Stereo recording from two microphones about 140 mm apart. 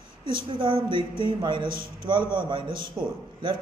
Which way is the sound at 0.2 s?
35° right (ahead or behind).